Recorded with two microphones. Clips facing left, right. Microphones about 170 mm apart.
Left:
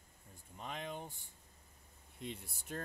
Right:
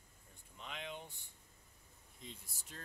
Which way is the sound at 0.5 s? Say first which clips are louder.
Left 4 dB; 45° left (ahead or behind).